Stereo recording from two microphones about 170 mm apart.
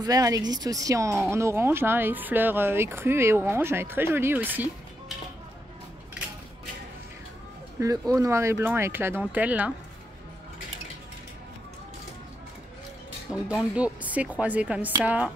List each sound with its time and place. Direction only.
0.0 s speech: 20° right (ahead or behind)
8.1 s speech: 15° right (ahead or behind)
13.6 s speech: 5° right (ahead or behind)